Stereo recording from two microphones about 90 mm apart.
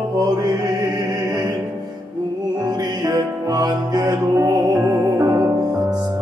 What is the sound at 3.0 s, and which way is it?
Music, 45° right (ahead or behind).